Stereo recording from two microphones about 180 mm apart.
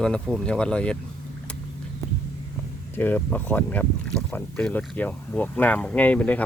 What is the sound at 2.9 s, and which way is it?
Speech, 10° left (ahead or behind).